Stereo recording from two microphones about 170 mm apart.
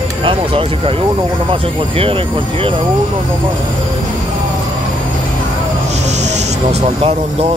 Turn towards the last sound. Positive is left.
turn(degrees=-40)  # may be behind; listen again after turning